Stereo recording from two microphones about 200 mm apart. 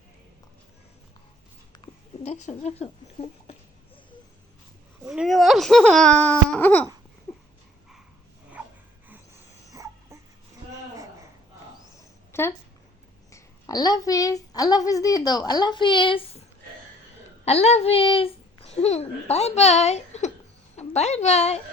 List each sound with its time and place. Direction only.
1.7 s speech: 30° left (ahead or behind)
5.1 s speech: centre (ahead or behind)
7.3 s a sound: 10° left (ahead or behind)
9.7 s dog: 15° right (ahead or behind)
12.3 s a sound: 10° left (ahead or behind)
14.5 s a woman's voice: 20° left (ahead or behind)
17.4 s a child's voice: 30° left (ahead or behind)